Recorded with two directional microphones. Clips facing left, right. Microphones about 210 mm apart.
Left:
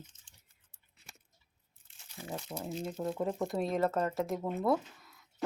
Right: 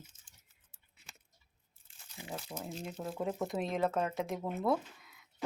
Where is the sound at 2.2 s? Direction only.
15° right (ahead or behind).